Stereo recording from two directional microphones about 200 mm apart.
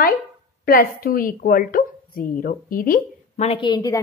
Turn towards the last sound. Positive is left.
turn(degrees=20)  # may be behind; listen again after turning